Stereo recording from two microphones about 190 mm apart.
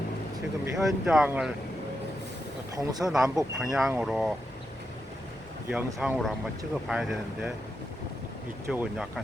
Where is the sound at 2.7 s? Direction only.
20° right (ahead or behind).